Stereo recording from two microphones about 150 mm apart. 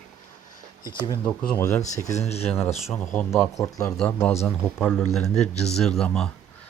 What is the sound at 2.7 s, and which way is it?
Speech, 5° right (ahead or behind).